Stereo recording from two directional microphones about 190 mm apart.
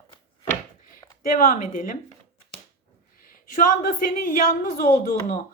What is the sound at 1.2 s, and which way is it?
Speech, 45° left (ahead or behind).